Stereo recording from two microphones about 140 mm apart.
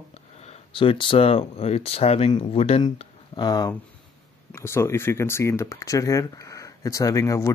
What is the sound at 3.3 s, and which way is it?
Speech, 30° left (ahead or behind).